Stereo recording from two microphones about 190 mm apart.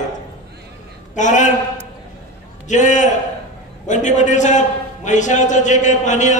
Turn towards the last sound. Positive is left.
turn(degrees=40)  # may be behind; listen again after turning